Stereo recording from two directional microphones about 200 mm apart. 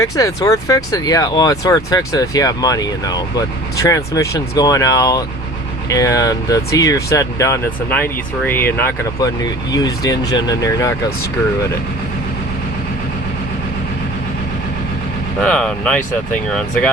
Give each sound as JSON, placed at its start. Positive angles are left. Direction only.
{"t": 0.0, "sound": "speech", "side_deg": 15}
{"t": 15.4, "sound": "speech", "side_deg": 5}